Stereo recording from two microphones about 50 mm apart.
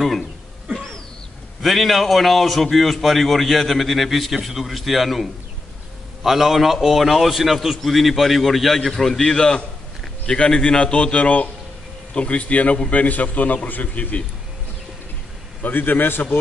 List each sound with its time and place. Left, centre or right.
1.6 s a man's voice: centre; by 14.2 s left
15.6 s a man's voice: left